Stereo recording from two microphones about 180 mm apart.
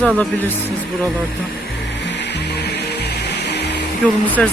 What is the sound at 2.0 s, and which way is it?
Music, 70° left (ahead or behind).